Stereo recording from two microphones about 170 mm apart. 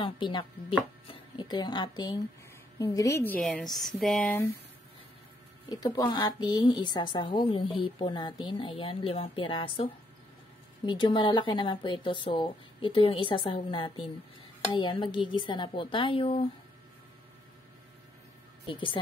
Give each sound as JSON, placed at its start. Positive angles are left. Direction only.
{"t": 0.0, "sound": "a woman's voice", "side_deg": 30}
{"t": 3.3, "sound": "speech", "side_deg": 0}
{"t": 5.7, "sound": "speech", "side_deg": 20}
{"t": 10.9, "sound": "speech", "side_deg": 25}
{"t": 18.7, "sound": "speech", "side_deg": 30}